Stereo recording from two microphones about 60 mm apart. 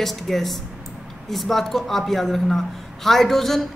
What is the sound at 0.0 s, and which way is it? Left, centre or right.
A man's voice, centre.